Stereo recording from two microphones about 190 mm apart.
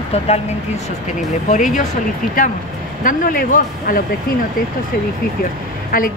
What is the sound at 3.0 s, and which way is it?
Speech, 45° left (ahead or behind).